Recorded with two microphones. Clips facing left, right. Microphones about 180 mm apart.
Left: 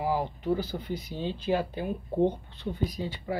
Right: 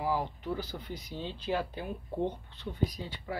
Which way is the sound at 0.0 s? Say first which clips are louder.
Left 3 dB; 15° left (ahead or behind).